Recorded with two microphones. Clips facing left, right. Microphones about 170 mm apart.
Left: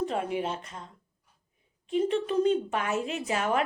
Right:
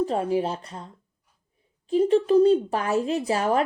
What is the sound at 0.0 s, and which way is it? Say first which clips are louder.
Speech: right 6 dB; 35° right (ahead or behind).